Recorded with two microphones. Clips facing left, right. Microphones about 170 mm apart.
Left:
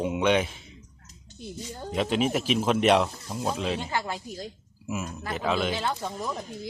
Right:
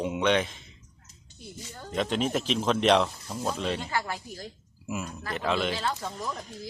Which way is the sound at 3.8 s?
20° left (ahead or behind).